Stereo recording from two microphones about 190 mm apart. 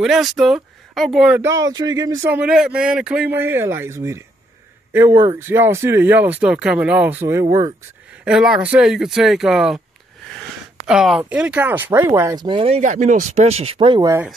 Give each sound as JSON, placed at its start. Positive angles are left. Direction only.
{"t": 0.0, "sound": "speech", "side_deg": 0}
{"t": 2.3, "sound": "speech", "side_deg": -5}
{"t": 10.9, "sound": "speech", "side_deg": -5}